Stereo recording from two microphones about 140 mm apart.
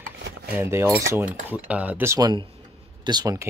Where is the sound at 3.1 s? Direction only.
30° right (ahead or behind).